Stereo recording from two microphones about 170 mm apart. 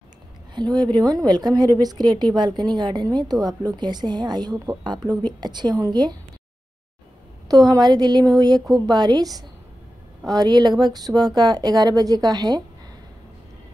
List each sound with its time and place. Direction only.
0.6 s a woman's voice: 25° right (ahead or behind)
7.4 s a woman's voice: 20° right (ahead or behind)